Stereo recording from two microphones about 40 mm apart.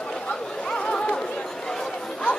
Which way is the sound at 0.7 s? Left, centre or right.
Left.